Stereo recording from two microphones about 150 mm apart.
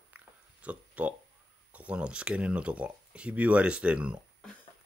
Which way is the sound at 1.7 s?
10° right (ahead or behind).